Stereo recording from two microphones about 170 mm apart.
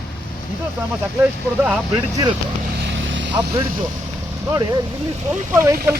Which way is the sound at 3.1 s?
90° right.